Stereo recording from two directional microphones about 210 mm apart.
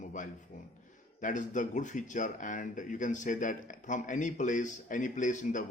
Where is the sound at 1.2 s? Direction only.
35° left (ahead or behind).